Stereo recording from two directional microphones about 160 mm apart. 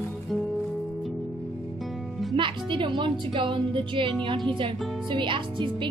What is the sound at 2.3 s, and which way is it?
Speech, 30° right (ahead or behind).